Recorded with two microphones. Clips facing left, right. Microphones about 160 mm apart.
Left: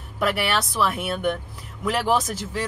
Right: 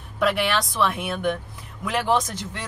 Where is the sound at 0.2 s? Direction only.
Centre (ahead or behind).